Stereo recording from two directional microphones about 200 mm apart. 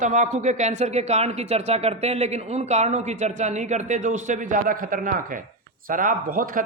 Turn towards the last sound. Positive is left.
turn(degrees=-45)  # may be behind; listen again after turning